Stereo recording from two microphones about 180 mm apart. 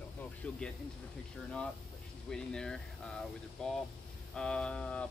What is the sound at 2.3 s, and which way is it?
Speech, 5° left (ahead or behind).